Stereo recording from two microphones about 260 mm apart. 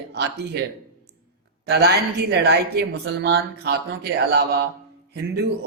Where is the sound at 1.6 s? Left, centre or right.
Right.